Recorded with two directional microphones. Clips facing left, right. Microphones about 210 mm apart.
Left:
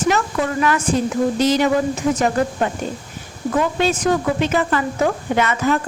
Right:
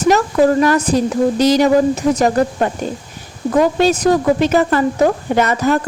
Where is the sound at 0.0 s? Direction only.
40° right (ahead or behind).